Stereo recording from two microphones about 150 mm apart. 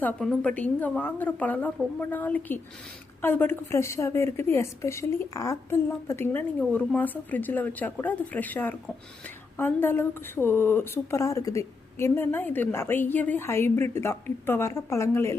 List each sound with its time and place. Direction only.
0.0 s a woman's voice: 5° left (ahead or behind)